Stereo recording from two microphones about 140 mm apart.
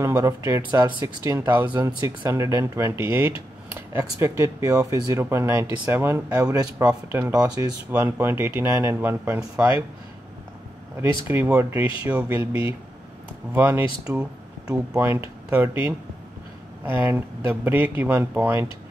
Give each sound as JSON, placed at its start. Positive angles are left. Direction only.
{"t": 0.0, "sound": "a sound", "side_deg": -20}
{"t": 0.5, "sound": "speech", "side_deg": -30}
{"t": 6.5, "sound": "speech", "side_deg": -25}
{"t": 11.0, "sound": "speech", "side_deg": -15}
{"t": 13.5, "sound": "speech", "side_deg": -15}